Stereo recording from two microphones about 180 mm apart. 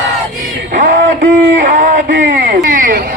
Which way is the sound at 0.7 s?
55° right (ahead or behind).